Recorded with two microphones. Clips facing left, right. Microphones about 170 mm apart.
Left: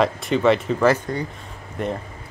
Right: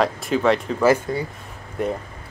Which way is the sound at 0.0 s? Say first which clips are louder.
Left 1 dB; centre (ahead or behind).